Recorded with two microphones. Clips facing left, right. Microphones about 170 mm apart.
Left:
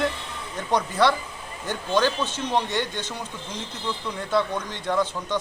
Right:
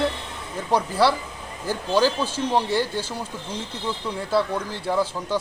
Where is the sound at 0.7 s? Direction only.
5° right (ahead or behind).